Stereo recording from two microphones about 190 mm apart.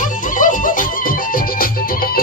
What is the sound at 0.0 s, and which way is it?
Music, 45° left (ahead or behind).